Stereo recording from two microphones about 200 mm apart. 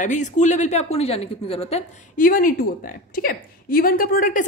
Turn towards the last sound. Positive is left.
turn(degrees=45)  # may be behind; listen again after turning